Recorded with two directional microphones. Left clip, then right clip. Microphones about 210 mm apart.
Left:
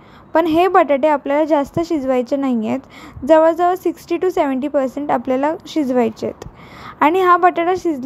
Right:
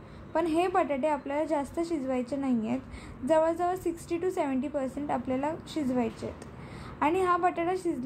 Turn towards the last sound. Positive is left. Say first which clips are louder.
# left 13 dB
turn(degrees=40)  # may be behind; listen again after turning